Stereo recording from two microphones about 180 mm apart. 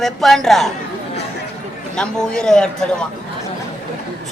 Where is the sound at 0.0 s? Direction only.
Centre (ahead or behind).